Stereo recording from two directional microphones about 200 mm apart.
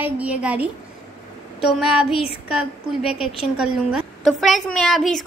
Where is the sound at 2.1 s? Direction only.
30° left (ahead or behind).